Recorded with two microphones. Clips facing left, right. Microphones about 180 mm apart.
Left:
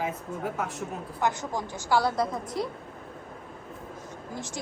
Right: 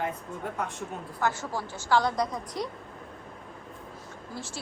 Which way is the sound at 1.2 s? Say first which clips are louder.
Left 1 dB; 15° left (ahead or behind).